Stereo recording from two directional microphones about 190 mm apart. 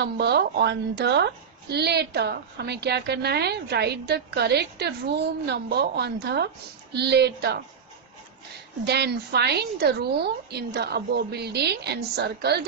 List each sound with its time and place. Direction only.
0.0 s a woman's voice: 60° right (ahead or behind)
8.8 s a woman's voice: 60° right (ahead or behind)